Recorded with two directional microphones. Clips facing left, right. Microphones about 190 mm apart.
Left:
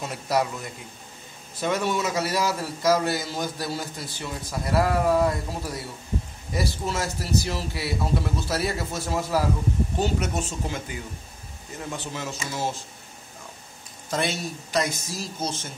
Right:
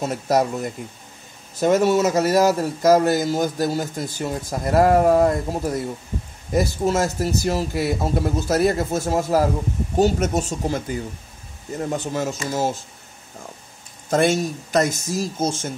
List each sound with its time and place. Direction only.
0.0 s a man's voice: 45° right (ahead or behind)
14.1 s a man's voice: 45° right (ahead or behind)